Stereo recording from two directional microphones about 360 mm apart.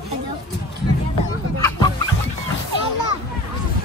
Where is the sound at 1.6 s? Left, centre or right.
Centre.